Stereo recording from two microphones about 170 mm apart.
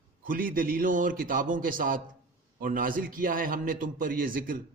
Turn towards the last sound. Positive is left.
turn(degrees=-55)  # may be behind; listen again after turning